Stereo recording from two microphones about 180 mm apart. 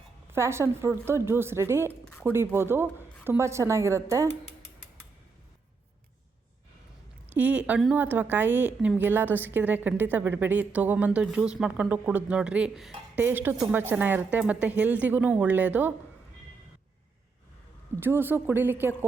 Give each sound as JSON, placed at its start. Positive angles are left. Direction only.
{"t": 0.3, "sound": "a woman's voice", "side_deg": -15}
{"t": 7.3, "sound": "a woman's voice", "side_deg": -10}
{"t": 18.0, "sound": "a woman's voice", "side_deg": -10}